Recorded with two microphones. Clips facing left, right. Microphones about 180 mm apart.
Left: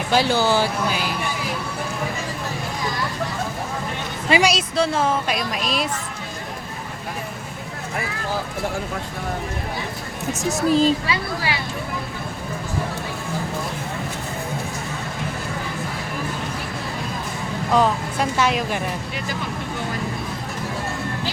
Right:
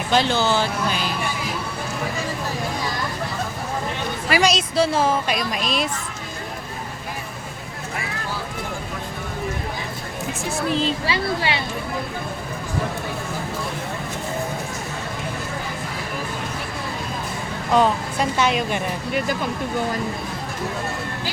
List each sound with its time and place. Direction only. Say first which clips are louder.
0.1 s speech: left 1 dB; 10° left (ahead or behind)
4.4 s speech: even; 10° left (ahead or behind)
4.7 s speech: right 1 dB; 5° right (ahead or behind)
10.5 s a woman's voice: left 5 dB; 40° left (ahead or behind)
11.0 s speech: right 2 dB; 25° right (ahead or behind)
17.7 s speech: right 1 dB; 5° left (ahead or behind)